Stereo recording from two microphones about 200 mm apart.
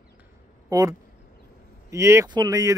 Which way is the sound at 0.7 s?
15° right (ahead or behind).